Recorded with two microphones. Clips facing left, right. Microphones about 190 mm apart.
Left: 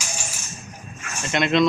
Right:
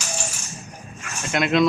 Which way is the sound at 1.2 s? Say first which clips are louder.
Even; 5° right (ahead or behind).